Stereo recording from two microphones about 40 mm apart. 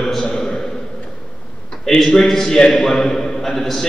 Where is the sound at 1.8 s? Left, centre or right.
Centre.